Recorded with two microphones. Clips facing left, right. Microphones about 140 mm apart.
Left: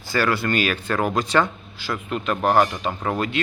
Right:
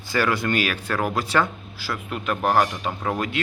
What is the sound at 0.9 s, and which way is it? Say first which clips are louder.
Speech: left 2 dB; 15° left (ahead or behind).